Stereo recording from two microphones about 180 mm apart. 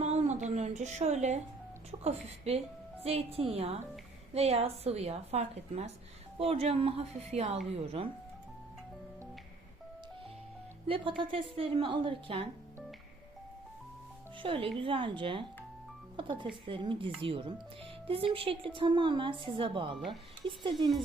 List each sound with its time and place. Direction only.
0.0 s a sound: 40° right (ahead or behind)
1.9 s a woman's voice: 35° right (ahead or behind)
10.8 s a woman's voice: 30° right (ahead or behind)
14.4 s a woman's voice: 30° right (ahead or behind)